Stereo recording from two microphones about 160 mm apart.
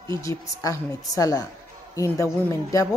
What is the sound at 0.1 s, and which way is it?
A woman's voice, 20° left (ahead or behind).